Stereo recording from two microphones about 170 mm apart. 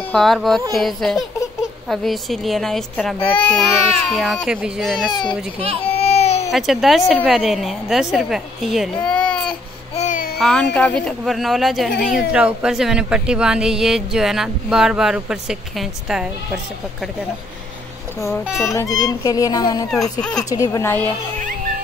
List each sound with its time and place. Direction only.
0.1 s a child's voice: centre (ahead or behind)
5.1 s speech: 30° left (ahead or behind)
5.9 s baby cry: 35° left (ahead or behind)
6.5 s speech: centre (ahead or behind)
9.9 s babbling: 50° left (ahead or behind)
10.4 s speech: 5° left (ahead or behind)
18.6 s speech: 15° left (ahead or behind)